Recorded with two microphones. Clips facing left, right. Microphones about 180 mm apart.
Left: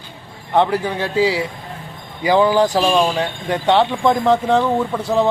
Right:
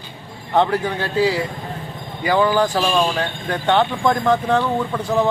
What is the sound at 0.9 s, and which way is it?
Speech, 20° left (ahead or behind).